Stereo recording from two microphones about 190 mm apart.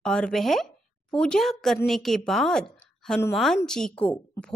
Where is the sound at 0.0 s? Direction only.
5° left (ahead or behind).